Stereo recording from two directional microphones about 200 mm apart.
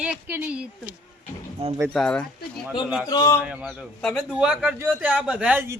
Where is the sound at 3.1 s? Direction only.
20° left (ahead or behind).